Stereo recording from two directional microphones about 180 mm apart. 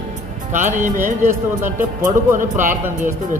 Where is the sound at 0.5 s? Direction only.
45° right (ahead or behind).